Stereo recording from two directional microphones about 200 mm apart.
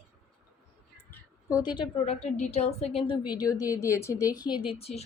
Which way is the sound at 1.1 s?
10° left (ahead or behind).